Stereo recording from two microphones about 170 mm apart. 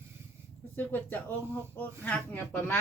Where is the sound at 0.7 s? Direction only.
10° left (ahead or behind).